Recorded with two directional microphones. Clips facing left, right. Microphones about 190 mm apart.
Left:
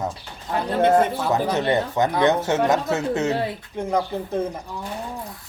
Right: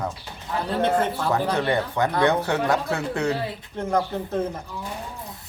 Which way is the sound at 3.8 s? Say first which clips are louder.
Even; 10° left (ahead or behind).